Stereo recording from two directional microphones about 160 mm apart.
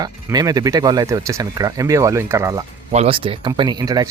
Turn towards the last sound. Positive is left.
turn(degrees=-25)  # may be behind; listen again after turning